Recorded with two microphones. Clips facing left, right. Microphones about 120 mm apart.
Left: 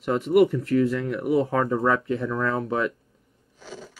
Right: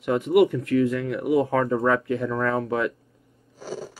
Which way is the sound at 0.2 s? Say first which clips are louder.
Left 1 dB; 35° left (ahead or behind).